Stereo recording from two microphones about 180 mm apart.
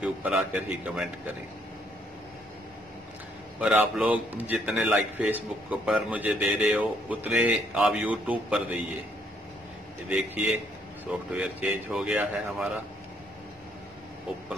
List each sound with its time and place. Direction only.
0.0 s a man's voice: 5° right (ahead or behind)
3.5 s a man's voice: 5° right (ahead or behind)
10.0 s speech: 5° right (ahead or behind)